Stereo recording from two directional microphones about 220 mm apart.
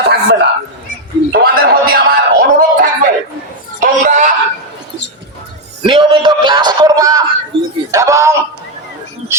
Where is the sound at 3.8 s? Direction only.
35° right (ahead or behind).